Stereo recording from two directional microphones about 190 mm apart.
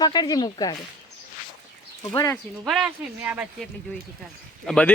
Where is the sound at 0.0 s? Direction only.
20° left (ahead or behind).